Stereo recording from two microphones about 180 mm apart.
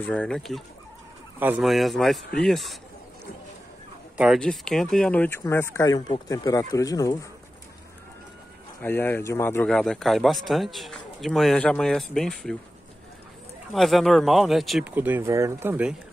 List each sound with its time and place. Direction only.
0.0 s a man's voice: 5° left (ahead or behind)
4.4 s a man's voice: 5° left (ahead or behind); by 7.2 s 20° left (ahead or behind)
8.8 s a man's voice: 10° left (ahead or behind)
13.7 s a man's voice: centre (ahead or behind)